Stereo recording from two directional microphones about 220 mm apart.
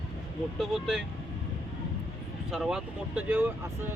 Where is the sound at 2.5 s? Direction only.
Centre (ahead or behind).